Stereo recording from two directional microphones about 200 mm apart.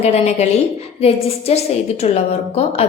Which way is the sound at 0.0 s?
30° left (ahead or behind).